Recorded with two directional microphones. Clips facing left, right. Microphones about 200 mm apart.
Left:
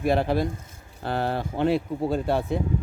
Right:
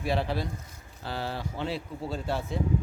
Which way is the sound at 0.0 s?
50° left (ahead or behind).